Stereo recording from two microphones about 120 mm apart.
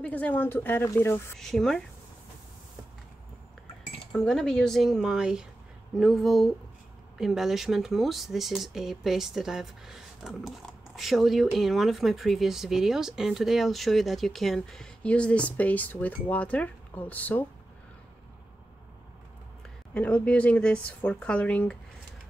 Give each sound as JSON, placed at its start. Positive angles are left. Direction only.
{"t": 0.0, "sound": "speech", "side_deg": 15}
{"t": 1.4, "sound": "speech", "side_deg": 5}
{"t": 4.1, "sound": "speech", "side_deg": 5}
{"t": 19.9, "sound": "speech", "side_deg": 10}